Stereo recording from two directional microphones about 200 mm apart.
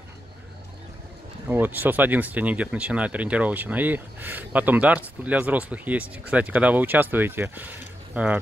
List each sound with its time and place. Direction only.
1.5 s speech: 10° right (ahead or behind)